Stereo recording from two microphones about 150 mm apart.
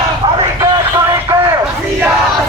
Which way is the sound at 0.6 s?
20° right (ahead or behind).